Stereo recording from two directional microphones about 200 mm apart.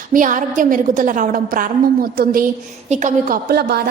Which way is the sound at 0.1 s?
40° right (ahead or behind).